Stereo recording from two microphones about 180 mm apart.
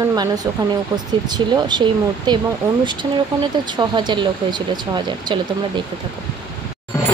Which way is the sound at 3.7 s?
25° right (ahead or behind).